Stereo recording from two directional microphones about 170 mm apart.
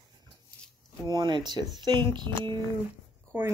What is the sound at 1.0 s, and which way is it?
A woman's voice, 25° right (ahead or behind).